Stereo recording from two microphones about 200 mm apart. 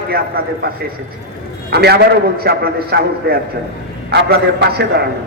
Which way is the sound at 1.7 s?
55° right (ahead or behind).